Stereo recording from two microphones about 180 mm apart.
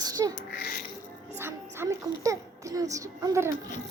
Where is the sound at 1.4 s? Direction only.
15° right (ahead or behind).